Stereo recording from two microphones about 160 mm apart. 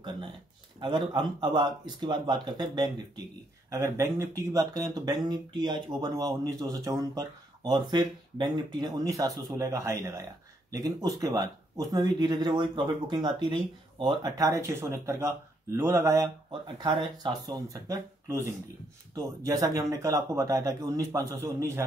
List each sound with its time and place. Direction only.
0.7 s speech: 30° right (ahead or behind)